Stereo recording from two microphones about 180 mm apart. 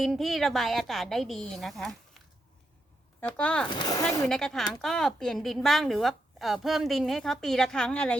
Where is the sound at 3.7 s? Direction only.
25° left (ahead or behind).